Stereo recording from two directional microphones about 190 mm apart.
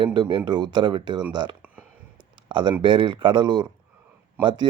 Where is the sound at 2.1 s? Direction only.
25° right (ahead or behind).